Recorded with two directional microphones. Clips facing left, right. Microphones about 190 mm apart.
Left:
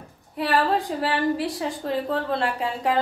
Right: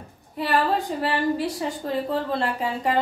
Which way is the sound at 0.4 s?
Centre (ahead or behind).